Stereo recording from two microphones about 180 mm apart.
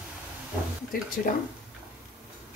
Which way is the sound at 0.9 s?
50° left (ahead or behind).